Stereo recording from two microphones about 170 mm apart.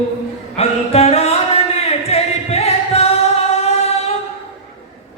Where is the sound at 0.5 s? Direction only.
40° left (ahead or behind).